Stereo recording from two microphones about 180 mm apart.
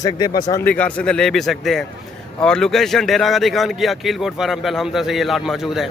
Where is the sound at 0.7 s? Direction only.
10° left (ahead or behind).